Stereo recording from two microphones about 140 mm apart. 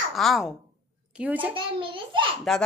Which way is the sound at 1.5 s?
35° right (ahead or behind).